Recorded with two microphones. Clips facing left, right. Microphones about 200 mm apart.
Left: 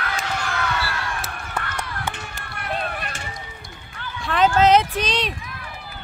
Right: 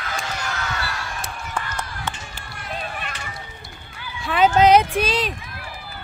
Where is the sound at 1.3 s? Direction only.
60° left (ahead or behind).